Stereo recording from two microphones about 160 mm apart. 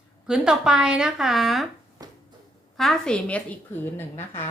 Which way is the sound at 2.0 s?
25° right (ahead or behind).